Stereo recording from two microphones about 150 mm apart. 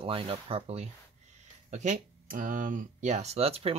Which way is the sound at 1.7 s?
55° right (ahead or behind).